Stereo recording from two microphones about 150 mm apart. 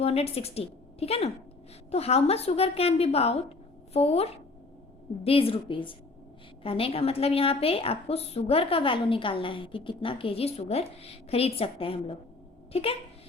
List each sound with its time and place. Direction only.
0.0 s a woman's voice: 40° left (ahead or behind)